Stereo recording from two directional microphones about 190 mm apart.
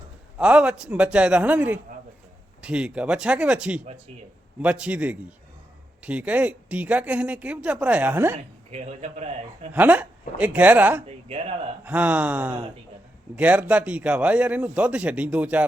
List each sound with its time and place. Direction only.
0.3 s speech: 5° right (ahead or behind)
8.7 s a man's voice: 35° right (ahead or behind)
9.7 s speech: 10° right (ahead or behind)
11.0 s a man's voice: 35° right (ahead or behind)
11.9 s speech: 10° right (ahead or behind)